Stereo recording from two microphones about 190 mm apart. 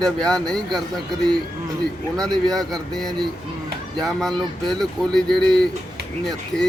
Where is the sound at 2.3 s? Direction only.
20° right (ahead or behind).